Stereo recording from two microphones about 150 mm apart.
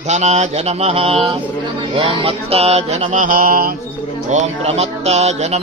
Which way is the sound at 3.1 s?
65° right (ahead or behind).